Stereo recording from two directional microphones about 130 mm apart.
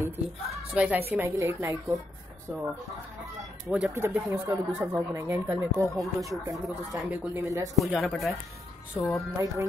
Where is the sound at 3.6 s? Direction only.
10° right (ahead or behind).